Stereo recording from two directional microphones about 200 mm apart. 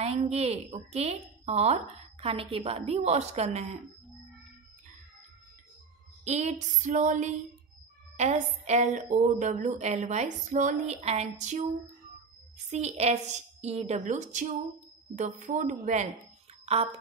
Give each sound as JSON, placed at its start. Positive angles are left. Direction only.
{"t": 0.0, "sound": "a woman's voice", "side_deg": -30}
{"t": 6.2, "sound": "a woman's voice", "side_deg": -35}
{"t": 12.6, "sound": "a woman's voice", "side_deg": -35}